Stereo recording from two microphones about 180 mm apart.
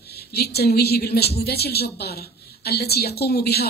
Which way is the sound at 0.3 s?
60° left (ahead or behind).